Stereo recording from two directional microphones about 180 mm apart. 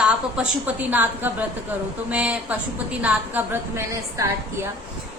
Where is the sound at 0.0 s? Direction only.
10° right (ahead or behind).